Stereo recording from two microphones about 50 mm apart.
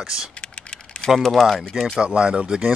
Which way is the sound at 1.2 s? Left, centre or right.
Centre.